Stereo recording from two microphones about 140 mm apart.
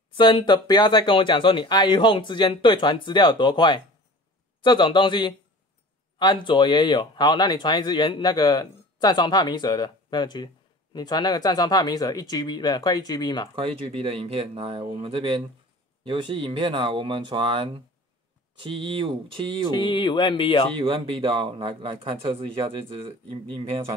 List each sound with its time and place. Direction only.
0.1 s speech: 35° left (ahead or behind)
13.6 s speech: 45° right (ahead or behind)
19.7 s speech: 35° left (ahead or behind)
20.7 s speech: 40° right (ahead or behind)